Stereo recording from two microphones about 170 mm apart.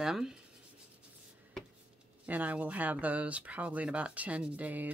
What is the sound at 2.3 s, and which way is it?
Speech, 10° right (ahead or behind).